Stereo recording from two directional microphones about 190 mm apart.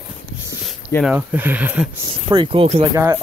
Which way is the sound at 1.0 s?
10° right (ahead or behind).